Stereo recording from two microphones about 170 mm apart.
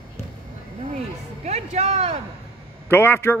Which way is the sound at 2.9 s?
15° left (ahead or behind).